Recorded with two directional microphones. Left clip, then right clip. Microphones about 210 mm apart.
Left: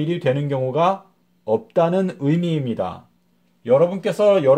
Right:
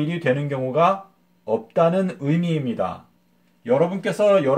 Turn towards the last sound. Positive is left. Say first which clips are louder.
# left 2 dB
turn(degrees=40)  # may be behind; listen again after turning